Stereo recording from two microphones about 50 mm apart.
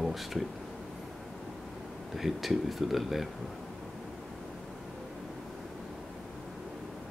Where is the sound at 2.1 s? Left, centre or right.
Centre.